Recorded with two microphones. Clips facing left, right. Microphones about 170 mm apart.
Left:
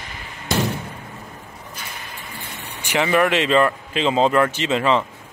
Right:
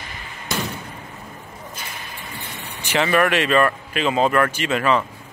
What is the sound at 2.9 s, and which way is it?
Speech, 15° left (ahead or behind).